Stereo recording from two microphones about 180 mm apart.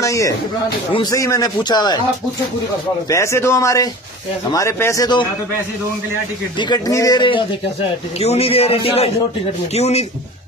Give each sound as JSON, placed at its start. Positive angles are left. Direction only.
{"t": 0.0, "sound": "speech", "side_deg": 15}
{"t": 3.1, "sound": "speech", "side_deg": 15}
{"t": 6.6, "sound": "a man's voice", "side_deg": 20}